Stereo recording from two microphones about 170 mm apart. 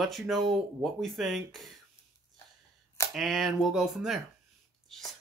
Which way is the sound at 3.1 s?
Centre (ahead or behind).